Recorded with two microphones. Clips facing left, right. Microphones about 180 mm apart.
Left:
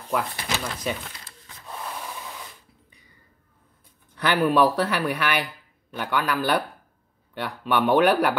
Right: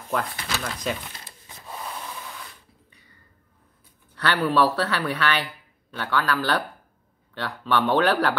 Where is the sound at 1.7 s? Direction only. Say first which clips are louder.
Even; centre (ahead or behind).